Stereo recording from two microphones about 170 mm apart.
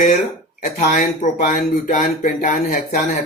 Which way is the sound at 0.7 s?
50° left (ahead or behind).